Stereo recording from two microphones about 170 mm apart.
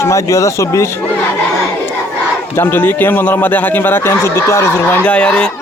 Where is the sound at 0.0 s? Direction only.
15° left (ahead or behind).